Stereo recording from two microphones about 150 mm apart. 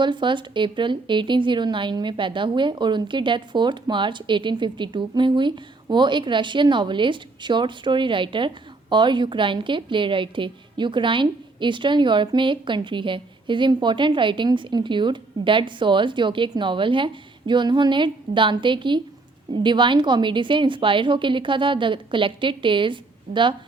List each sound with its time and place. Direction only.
0.0 s a woman's voice: 30° right (ahead or behind)